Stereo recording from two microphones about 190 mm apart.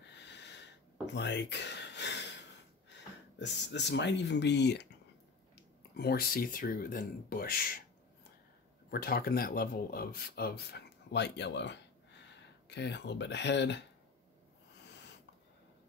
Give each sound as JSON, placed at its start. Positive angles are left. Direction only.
{"t": 0.0, "sound": "snort", "side_deg": 65}
{"t": 1.0, "sound": "speech", "side_deg": 65}
{"t": 5.9, "sound": "speech", "side_deg": 55}
{"t": 8.9, "sound": "speech", "side_deg": 55}